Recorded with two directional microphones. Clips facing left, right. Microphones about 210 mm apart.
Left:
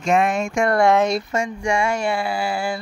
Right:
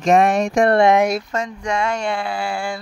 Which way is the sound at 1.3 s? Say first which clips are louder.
Left 1 dB; 10° left (ahead or behind).